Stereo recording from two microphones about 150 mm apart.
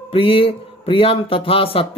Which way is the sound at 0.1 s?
40° left (ahead or behind).